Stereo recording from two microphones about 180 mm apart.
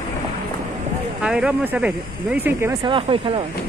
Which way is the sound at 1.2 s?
5° right (ahead or behind).